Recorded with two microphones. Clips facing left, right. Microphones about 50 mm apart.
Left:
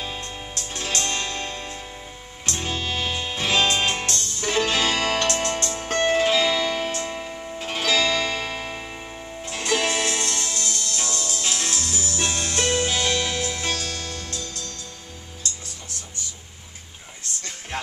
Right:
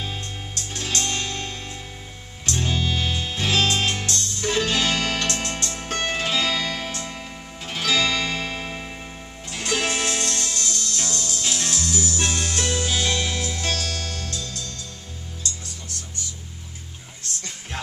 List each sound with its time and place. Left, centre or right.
0.2 s music: left
6.0 s music: centre
8.5 s music: centre
9.5 s music: left
13.7 s music: centre
14.3 s music: left